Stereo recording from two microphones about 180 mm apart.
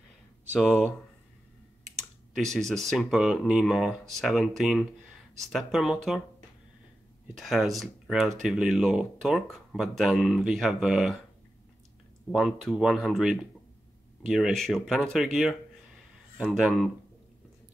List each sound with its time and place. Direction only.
0.6 s speech: 5° left (ahead or behind)
2.3 s speech: centre (ahead or behind)
7.3 s speech: centre (ahead or behind)
12.3 s speech: centre (ahead or behind)